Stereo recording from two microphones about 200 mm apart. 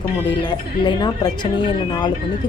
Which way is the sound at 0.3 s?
25° left (ahead or behind).